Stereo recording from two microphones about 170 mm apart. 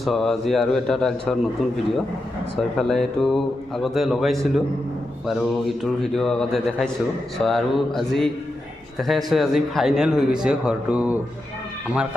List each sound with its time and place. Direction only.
0.0 s speech: centre (ahead or behind)